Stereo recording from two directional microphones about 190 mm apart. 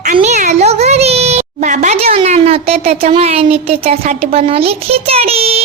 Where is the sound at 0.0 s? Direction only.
40° right (ahead or behind).